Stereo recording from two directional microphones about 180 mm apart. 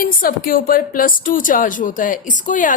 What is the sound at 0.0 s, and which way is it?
A woman's voice, 50° left (ahead or behind).